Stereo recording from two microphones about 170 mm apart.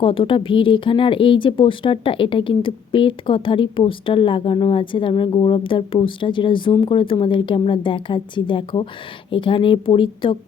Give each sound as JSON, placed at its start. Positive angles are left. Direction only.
{"t": 0.0, "sound": "speech", "side_deg": 30}